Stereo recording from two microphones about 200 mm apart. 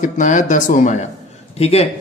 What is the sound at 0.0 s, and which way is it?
Speech, 40° left (ahead or behind).